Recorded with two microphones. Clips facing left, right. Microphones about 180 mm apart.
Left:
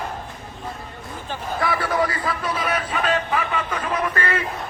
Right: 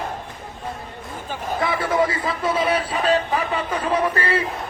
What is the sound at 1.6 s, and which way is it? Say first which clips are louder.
Speech: right 2 dB; 25° right (ahead or behind).